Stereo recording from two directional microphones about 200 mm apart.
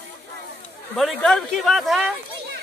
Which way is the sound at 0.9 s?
Centre (ahead or behind).